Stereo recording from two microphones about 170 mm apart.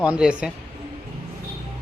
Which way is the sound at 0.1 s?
5° right (ahead or behind).